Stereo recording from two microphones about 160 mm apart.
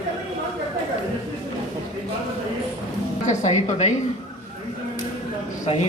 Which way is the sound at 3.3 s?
45° left (ahead or behind).